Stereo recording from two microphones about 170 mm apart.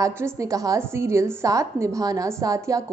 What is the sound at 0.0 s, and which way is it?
A woman's voice, 20° right (ahead or behind).